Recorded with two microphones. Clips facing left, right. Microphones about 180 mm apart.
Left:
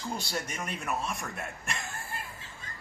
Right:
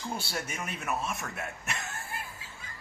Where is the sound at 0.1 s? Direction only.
5° right (ahead or behind).